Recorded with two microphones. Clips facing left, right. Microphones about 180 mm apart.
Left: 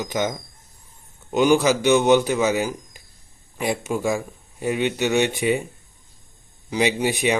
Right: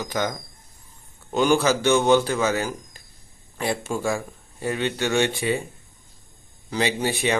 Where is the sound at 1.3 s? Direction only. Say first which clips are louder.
Left 2 dB; 15° left (ahead or behind).